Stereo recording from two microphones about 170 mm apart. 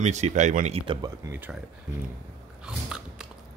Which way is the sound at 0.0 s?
45° right (ahead or behind).